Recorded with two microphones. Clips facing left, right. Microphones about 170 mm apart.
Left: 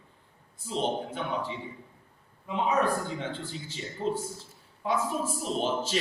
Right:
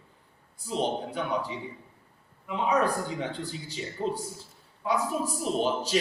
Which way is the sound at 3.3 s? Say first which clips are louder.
Right 2 dB; 40° right (ahead or behind).